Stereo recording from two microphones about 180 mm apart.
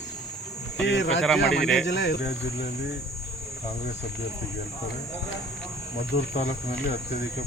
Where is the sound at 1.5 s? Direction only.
5° left (ahead or behind).